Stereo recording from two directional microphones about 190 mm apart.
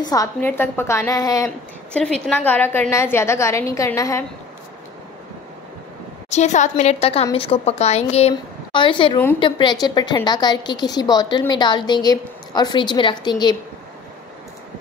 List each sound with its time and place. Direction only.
0.0 s a woman's voice: 20° left (ahead or behind)
2.0 s a woman's voice: 5° left (ahead or behind)
6.3 s a woman's voice: 40° left (ahead or behind); by 13.6 s 20° left (ahead or behind)